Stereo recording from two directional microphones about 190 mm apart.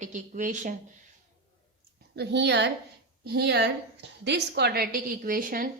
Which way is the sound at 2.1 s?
65° right (ahead or behind).